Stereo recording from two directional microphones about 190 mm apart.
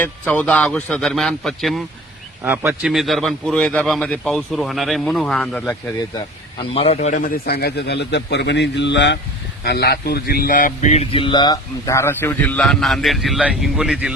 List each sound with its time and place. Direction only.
0.0 s a man's voice: 10° left (ahead or behind)
2.4 s a man's voice: 10° right (ahead or behind); by 5.7 s 5° left (ahead or behind)
6.6 s speech: 30° left (ahead or behind); by 14.1 s 5° right (ahead or behind)